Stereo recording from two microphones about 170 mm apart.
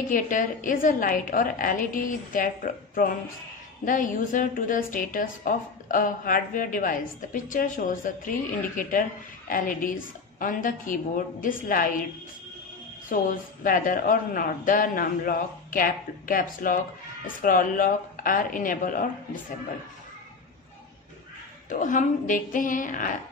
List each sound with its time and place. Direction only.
0.1 s a woman's voice: 50° left (ahead or behind)
13.1 s a woman's voice: 50° left (ahead or behind)
21.6 s a woman's voice: 50° left (ahead or behind)